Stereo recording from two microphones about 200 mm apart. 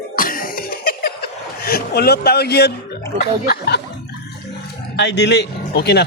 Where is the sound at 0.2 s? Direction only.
45° left (ahead or behind).